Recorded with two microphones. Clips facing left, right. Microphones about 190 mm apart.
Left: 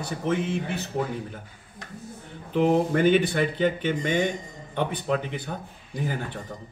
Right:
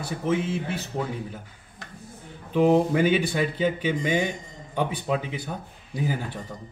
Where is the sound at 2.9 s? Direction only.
5° right (ahead or behind).